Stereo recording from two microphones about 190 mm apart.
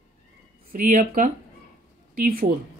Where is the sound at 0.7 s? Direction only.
40° right (ahead or behind).